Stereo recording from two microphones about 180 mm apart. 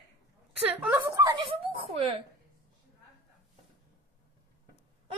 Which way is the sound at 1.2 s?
25° right (ahead or behind).